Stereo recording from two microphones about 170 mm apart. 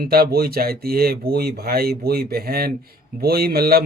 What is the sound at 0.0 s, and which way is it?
Speech, 60° right (ahead or behind).